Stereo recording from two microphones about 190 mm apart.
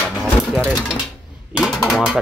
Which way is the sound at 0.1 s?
Centre (ahead or behind).